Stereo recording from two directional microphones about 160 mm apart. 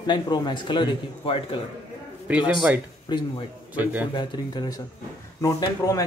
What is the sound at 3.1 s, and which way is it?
Speech, 30° left (ahead or behind).